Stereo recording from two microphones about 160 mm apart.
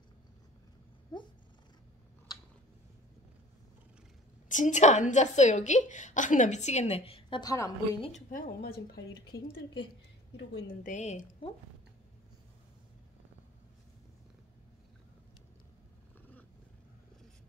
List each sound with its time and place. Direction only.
4.5 s a woman's voice: 50° left (ahead or behind); by 8.0 s 20° left (ahead or behind)
8.3 s a woman's voice: 65° left (ahead or behind); by 10.8 s 90° left
10.8 s a woman's voice: 50° left (ahead or behind)